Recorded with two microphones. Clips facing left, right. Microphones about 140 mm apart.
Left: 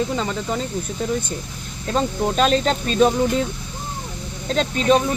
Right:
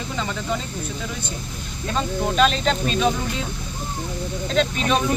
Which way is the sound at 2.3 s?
40° left (ahead or behind).